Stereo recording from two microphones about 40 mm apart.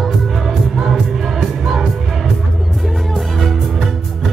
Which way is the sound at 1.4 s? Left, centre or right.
Centre.